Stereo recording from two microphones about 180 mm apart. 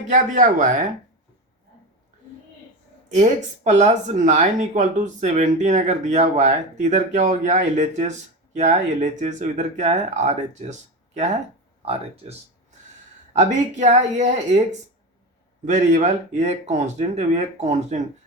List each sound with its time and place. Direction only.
0.1 s speech: 45° right (ahead or behind)
3.1 s speech: 40° right (ahead or behind)